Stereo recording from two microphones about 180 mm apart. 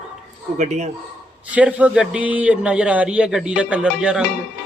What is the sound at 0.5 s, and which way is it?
Speech, 40° right (ahead or behind).